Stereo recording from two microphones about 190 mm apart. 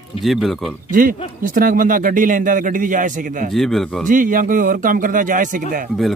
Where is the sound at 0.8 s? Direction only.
45° right (ahead or behind).